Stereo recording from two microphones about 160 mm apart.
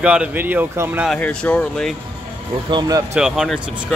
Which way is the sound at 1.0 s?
10° left (ahead or behind).